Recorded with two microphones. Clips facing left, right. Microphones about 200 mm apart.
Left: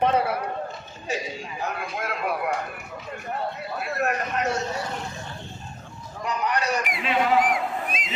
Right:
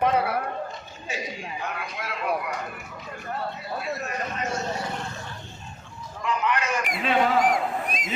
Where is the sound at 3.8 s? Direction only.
65° left (ahead or behind).